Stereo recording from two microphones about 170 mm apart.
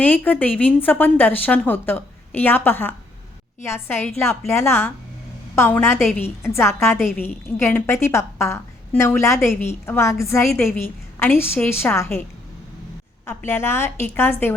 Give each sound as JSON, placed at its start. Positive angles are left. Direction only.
{"t": 0.0, "sound": "a woman's voice", "side_deg": 10}
{"t": 13.2, "sound": "a woman's voice", "side_deg": 15}